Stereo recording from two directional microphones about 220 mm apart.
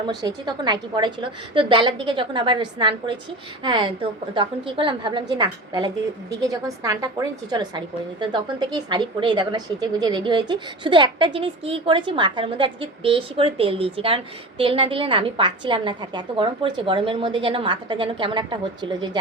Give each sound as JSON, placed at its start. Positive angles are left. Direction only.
{"t": 0.0, "sound": "a woman's voice", "side_deg": -20}